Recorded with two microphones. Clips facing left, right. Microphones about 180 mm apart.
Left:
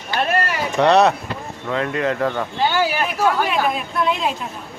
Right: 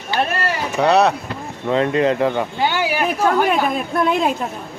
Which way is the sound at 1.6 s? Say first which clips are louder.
Right 5 dB; 25° right (ahead or behind).